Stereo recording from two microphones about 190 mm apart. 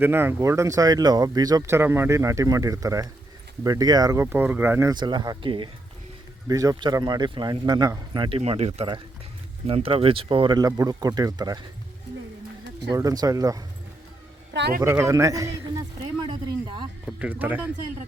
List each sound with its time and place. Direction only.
0.0 s speech: 10° right (ahead or behind)
12.9 s speech: 20° right (ahead or behind)
14.8 s speech: 15° right (ahead or behind)
16.2 s a sound: 25° right (ahead or behind)
17.1 s speech: 5° right (ahead or behind)